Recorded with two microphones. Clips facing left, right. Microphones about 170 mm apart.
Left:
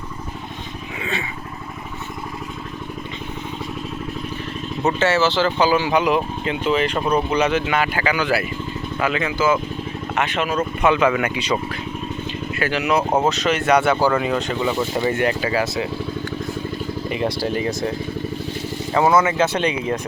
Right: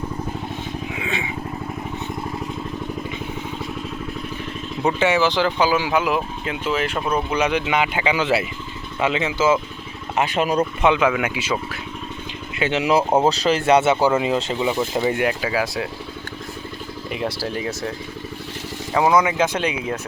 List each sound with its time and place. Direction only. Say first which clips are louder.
4.8 s speech: even; 10° right (ahead or behind)
10.2 s speech: right 3 dB; 35° right (ahead or behind)
10.6 s speech: left 2 dB; 15° right (ahead or behind)
12.5 s speech: right 2 dB; 25° right (ahead or behind); by 15.9 s 5° right (ahead or behind)
17.1 s speech: left 3 dB; 5° right (ahead or behind)
18.9 s speech: left 1 dB; 10° right (ahead or behind)